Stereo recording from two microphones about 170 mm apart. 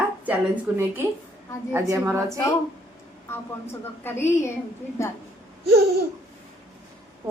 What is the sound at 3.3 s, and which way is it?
A woman's voice, 15° left (ahead or behind).